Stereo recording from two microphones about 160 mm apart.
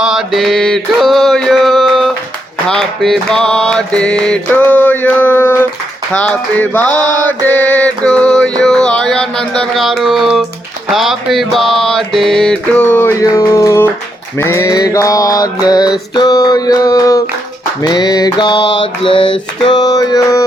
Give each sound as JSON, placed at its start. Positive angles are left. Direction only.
{"t": 0.0, "sound": "mantra", "side_deg": 0}
{"t": 2.6, "sound": "music", "side_deg": 0}
{"t": 6.1, "sound": "speech", "side_deg": 10}
{"t": 7.3, "sound": "music", "side_deg": 10}
{"t": 13.2, "sound": "mantra", "side_deg": 20}